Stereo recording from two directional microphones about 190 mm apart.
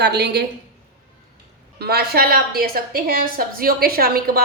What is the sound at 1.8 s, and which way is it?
A woman's voice, 55° right (ahead or behind).